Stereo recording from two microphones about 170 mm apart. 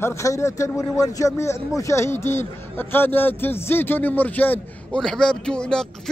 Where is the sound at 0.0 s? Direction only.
15° left (ahead or behind).